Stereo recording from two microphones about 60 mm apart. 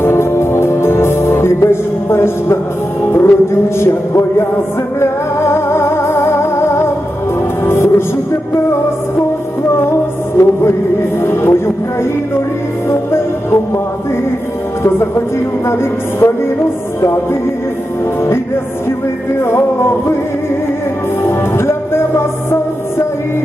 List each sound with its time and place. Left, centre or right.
0.0 s music: left
10.3 s music: left
11.2 s speech: left
12.9 s music: left
14.8 s music: left
19.4 s music: left
21.6 s music: left